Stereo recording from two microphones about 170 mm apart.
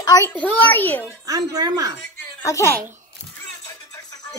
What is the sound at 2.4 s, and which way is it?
Speech, 15° left (ahead or behind).